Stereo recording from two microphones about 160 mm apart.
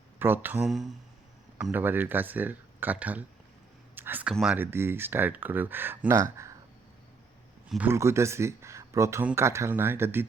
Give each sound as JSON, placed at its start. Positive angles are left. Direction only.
{"t": 0.2, "sound": "speech", "side_deg": -10}
{"t": 3.9, "sound": "a sound", "side_deg": -10}
{"t": 4.5, "sound": "speech", "side_deg": -15}
{"t": 7.7, "sound": "speech", "side_deg": -10}